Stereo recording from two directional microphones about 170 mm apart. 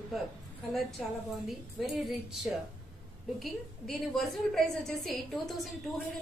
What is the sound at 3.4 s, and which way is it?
A woman's voice, centre (ahead or behind).